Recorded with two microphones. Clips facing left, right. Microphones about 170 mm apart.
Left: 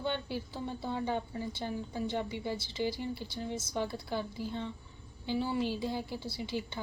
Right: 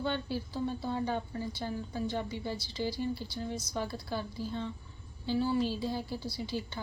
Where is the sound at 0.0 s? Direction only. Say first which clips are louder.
Right 1 dB; 20° left (ahead or behind).